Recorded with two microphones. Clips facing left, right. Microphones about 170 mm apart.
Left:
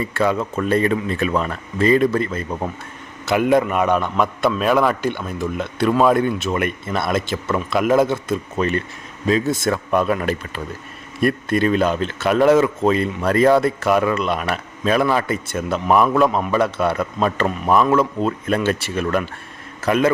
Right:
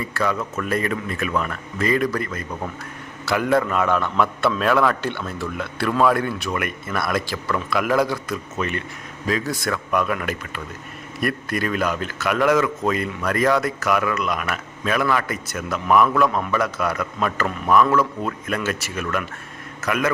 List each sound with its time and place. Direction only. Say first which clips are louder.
0.0 s a man's voice: left 4 dB; 25° left (ahead or behind)
9.2 s a man's voice: left 6 dB; 25° left (ahead or behind)